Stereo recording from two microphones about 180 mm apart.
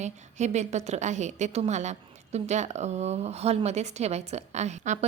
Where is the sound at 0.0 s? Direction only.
40° right (ahead or behind).